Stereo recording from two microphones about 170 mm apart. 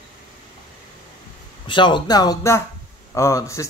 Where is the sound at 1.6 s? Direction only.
30° left (ahead or behind).